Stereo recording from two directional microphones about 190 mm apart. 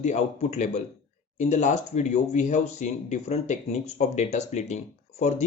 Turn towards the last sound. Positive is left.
turn(degrees=35)  # may be behind; listen again after turning